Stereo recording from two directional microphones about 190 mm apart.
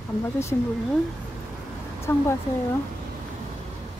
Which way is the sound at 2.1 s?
10° left (ahead or behind).